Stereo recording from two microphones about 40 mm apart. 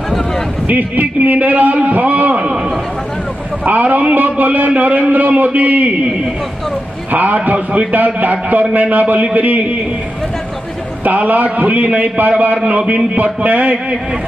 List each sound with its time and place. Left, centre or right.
0.7 s a man's voice: right
1.9 s a sound: right
3.6 s a man's voice: right
7.1 s a man's voice: right
11.1 s a man's voice: right